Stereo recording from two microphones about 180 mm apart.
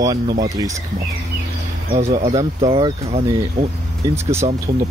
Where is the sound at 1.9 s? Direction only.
35° right (ahead or behind).